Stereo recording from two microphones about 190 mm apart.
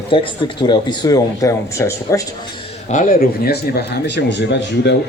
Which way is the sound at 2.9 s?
45° left (ahead or behind).